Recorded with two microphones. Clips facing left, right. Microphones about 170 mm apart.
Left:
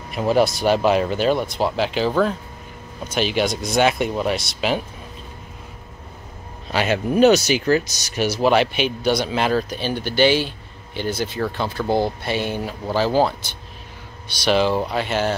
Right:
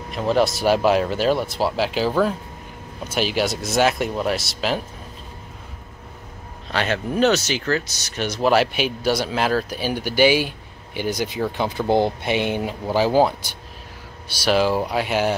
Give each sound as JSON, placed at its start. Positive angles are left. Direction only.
{"t": 0.1, "sound": "speech", "side_deg": 5}
{"t": 6.7, "sound": "speech", "side_deg": 10}